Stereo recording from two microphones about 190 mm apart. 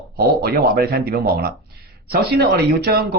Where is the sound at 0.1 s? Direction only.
55° right (ahead or behind).